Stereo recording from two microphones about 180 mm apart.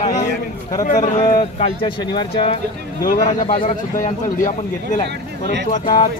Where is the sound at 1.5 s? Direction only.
30° left (ahead or behind).